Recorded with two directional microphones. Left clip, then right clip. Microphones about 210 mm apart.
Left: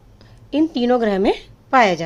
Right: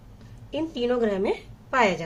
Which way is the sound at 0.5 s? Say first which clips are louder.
Left 8 dB; 50° left (ahead or behind).